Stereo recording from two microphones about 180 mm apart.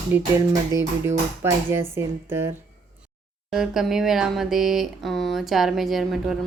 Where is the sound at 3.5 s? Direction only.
5° right (ahead or behind).